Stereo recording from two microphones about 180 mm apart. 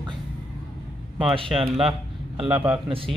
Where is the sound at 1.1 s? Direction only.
30° right (ahead or behind).